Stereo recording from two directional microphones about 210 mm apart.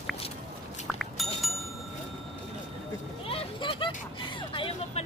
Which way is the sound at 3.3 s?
25° left (ahead or behind).